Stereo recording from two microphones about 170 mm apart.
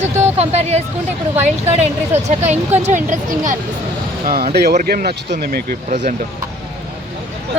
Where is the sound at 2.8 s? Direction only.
45° right (ahead or behind).